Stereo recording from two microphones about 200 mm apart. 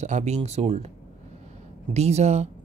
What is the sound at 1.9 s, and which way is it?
Speech, 35° right (ahead or behind).